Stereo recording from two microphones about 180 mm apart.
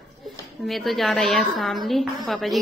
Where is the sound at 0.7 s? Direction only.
Centre (ahead or behind).